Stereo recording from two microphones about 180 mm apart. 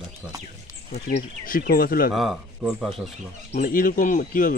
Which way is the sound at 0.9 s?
55° left (ahead or behind).